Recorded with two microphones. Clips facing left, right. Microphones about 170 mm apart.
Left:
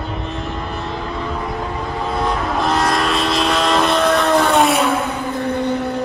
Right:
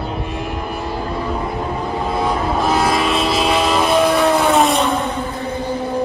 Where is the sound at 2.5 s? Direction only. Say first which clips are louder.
Right 1 dB; 5° right (ahead or behind).